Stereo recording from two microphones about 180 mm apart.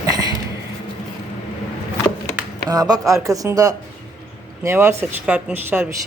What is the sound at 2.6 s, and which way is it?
Speech, 20° right (ahead or behind).